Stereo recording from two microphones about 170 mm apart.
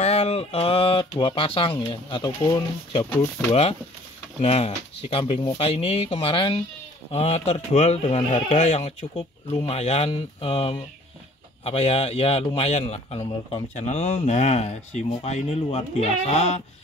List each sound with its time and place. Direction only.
0.0 s a man's voice: 35° left (ahead or behind); by 3.5 s 15° left (ahead or behind)
4.4 s a man's voice: 40° left (ahead or behind)